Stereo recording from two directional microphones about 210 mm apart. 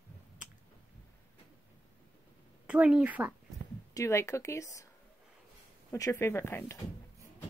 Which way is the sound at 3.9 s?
15° left (ahead or behind).